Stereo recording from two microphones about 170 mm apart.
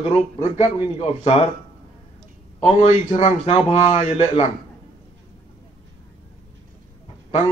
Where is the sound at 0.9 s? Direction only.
35° left (ahead or behind).